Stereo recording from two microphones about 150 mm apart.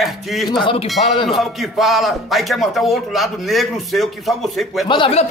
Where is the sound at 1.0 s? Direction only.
40° left (ahead or behind).